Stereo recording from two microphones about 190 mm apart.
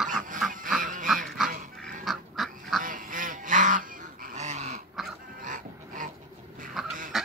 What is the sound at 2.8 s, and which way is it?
Goose, 45° right (ahead or behind).